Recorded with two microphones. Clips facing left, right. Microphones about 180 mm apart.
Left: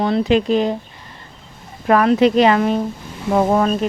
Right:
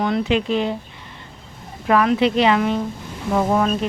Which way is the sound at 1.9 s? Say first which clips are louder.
Left 3 dB; 45° left (ahead or behind).